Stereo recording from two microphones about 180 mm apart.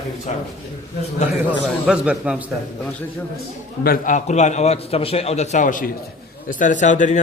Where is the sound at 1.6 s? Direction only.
5° right (ahead or behind).